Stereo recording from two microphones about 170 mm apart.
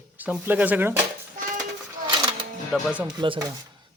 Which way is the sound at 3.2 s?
25° right (ahead or behind).